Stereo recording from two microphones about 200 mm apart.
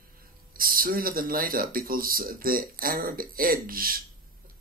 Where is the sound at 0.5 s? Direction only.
45° right (ahead or behind).